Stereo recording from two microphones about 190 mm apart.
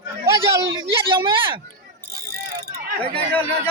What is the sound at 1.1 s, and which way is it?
Speech, 25° right (ahead or behind).